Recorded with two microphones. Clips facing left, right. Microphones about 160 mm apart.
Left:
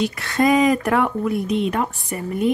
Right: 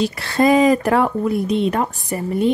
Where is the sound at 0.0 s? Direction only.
30° right (ahead or behind).